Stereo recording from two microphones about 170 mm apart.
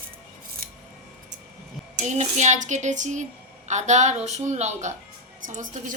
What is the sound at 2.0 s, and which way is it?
Speech, 45° right (ahead or behind).